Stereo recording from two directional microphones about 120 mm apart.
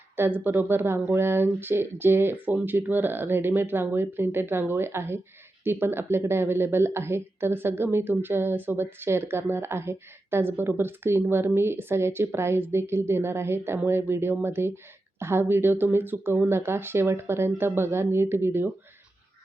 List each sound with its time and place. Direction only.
0.2 s speech: 15° right (ahead or behind)